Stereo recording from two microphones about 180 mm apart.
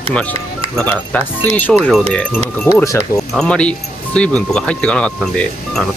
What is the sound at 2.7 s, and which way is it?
Speech, 15° left (ahead or behind).